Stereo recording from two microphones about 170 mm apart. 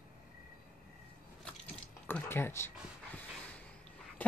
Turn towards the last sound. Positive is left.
turn(degrees=10)  # may be behind; listen again after turning